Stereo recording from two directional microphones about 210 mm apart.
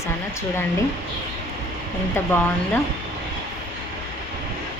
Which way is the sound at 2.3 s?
10° left (ahead or behind).